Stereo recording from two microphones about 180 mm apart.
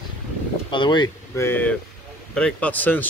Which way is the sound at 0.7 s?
25° left (ahead or behind).